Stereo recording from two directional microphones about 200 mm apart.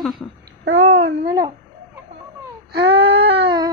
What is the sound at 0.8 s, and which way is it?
Speech, 30° right (ahead or behind).